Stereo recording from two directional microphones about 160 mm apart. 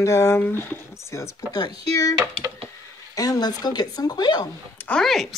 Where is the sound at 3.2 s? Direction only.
25° left (ahead or behind).